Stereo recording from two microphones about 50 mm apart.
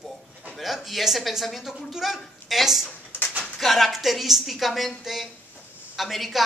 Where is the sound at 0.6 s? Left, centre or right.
Centre.